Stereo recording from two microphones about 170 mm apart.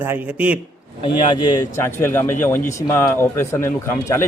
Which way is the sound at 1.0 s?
25° left (ahead or behind).